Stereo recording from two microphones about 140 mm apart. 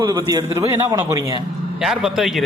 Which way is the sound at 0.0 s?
25° right (ahead or behind).